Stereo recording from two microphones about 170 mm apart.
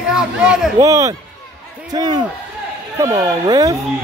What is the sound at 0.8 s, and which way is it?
Speech, 20° right (ahead or behind).